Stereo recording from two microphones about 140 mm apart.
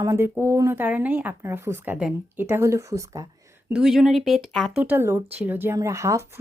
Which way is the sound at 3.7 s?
5° right (ahead or behind).